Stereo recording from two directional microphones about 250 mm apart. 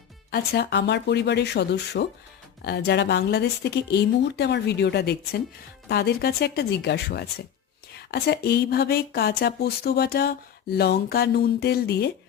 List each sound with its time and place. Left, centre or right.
0.3 s speech: left